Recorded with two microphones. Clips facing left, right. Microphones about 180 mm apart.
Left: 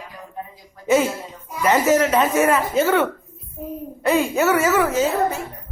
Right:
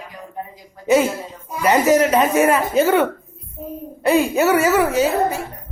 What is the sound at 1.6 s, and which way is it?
Mantra, 15° right (ahead or behind).